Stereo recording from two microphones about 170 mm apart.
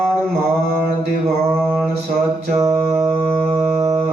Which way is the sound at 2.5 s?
20° right (ahead or behind).